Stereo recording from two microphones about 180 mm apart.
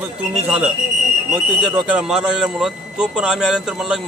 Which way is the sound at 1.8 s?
5° right (ahead or behind).